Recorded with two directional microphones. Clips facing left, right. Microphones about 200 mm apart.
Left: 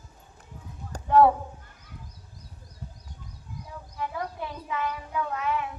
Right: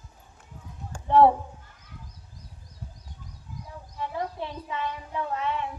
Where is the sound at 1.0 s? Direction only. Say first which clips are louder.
Right 1 dB; 25° right (ahead or behind).